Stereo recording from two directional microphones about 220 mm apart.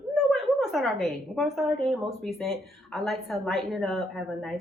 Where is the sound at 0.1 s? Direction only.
Centre (ahead or behind).